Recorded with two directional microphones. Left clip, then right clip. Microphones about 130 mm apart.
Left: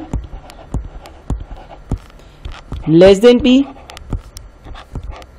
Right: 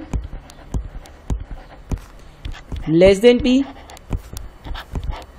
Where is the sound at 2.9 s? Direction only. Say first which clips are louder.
Left 5 dB; 35° left (ahead or behind).